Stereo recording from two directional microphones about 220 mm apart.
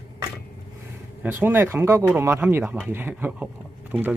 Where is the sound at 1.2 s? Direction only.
10° right (ahead or behind).